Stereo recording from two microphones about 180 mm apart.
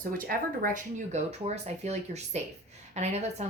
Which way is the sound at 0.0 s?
50° right (ahead or behind).